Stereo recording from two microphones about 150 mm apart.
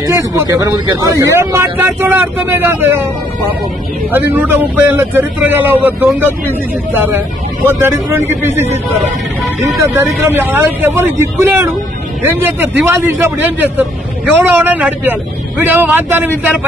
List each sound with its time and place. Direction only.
0.0 s a man's voice: 20° right (ahead or behind)
4.1 s a man's voice: 15° right (ahead or behind)
9.8 s a man's voice: 15° right (ahead or behind)